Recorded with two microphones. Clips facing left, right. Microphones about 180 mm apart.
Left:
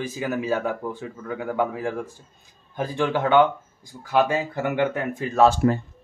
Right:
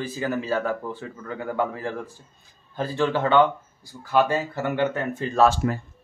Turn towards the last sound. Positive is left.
turn(degrees=30)  # may be behind; listen again after turning